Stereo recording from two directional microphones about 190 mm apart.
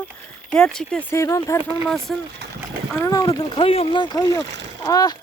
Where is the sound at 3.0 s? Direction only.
20° left (ahead or behind).